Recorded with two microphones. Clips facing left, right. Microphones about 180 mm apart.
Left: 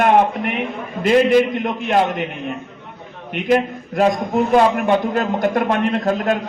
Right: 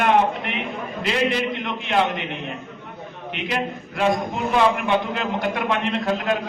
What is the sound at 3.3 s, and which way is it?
A man's voice, 45° left (ahead or behind).